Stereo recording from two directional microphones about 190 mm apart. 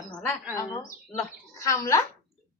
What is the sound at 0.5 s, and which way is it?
A woman's voice, 20° left (ahead or behind).